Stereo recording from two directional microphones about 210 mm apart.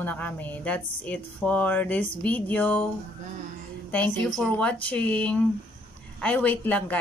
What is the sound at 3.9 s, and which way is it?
A woman's voice, 5° left (ahead or behind).